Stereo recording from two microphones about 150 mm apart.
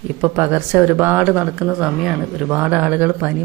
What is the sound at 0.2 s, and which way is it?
Speech, 15° right (ahead or behind).